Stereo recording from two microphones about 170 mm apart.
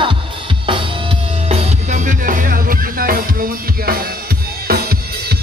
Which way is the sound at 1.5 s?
40° right (ahead or behind).